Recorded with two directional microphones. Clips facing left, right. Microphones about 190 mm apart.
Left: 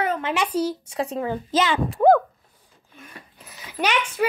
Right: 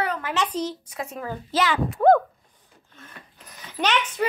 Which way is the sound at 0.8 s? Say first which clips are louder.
Left 7 dB; 30° left (ahead or behind).